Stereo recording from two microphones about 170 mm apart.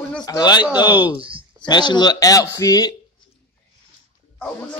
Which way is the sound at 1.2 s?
30° right (ahead or behind).